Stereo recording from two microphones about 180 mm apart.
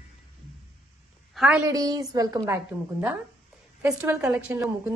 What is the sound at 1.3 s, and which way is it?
Speech, 5° right (ahead or behind).